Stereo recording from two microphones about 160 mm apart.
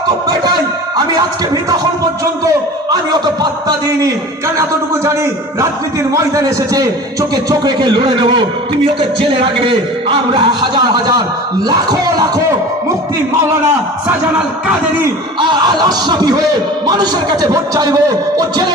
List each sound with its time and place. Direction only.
0.3 s speech: 25° right (ahead or behind)
3.7 s a man's voice: 20° right (ahead or behind)
15.4 s a man's voice: 30° right (ahead or behind)